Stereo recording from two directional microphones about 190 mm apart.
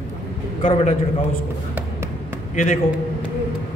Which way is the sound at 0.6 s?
30° left (ahead or behind).